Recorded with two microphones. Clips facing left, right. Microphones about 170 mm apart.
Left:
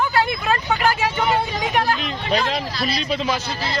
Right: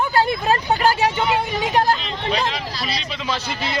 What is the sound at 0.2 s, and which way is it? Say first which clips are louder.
Vehicle: right 2 dB; 35° right (ahead or behind).